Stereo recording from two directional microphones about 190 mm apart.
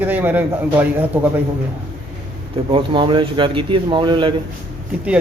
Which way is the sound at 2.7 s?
25° right (ahead or behind).